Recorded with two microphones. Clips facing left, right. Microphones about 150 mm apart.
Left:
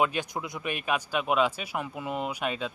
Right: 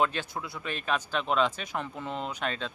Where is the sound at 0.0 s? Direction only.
15° left (ahead or behind).